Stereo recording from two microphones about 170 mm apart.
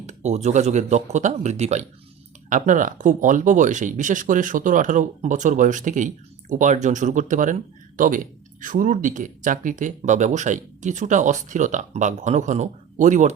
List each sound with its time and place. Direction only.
0.0 s speech: 45° right (ahead or behind)